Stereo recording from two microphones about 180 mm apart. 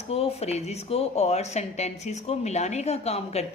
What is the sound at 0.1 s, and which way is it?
Speech, 35° left (ahead or behind).